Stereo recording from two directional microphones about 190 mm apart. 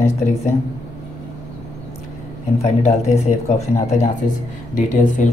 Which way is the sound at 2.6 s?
35° left (ahead or behind).